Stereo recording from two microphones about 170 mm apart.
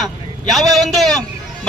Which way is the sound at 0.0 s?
Centre (ahead or behind).